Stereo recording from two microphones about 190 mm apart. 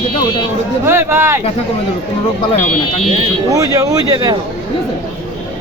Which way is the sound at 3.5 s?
20° right (ahead or behind).